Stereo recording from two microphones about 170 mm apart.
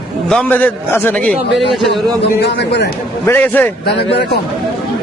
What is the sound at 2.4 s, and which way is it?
Speech, 80° left.